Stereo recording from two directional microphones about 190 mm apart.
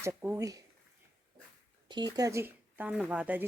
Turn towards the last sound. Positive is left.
turn(degrees=-5)  # may be behind; listen again after turning